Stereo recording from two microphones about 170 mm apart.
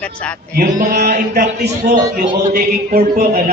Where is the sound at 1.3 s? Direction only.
70° right (ahead or behind).